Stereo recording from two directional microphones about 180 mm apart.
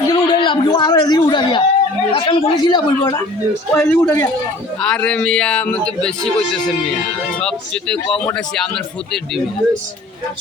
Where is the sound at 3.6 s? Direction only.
10° left (ahead or behind).